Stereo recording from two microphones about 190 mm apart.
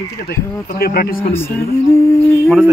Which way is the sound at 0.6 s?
50° left (ahead or behind).